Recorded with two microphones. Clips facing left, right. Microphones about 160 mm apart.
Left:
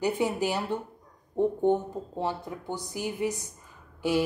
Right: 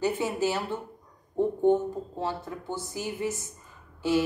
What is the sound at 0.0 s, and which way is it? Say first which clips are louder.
A woman's voice: even; 15° left (ahead or behind).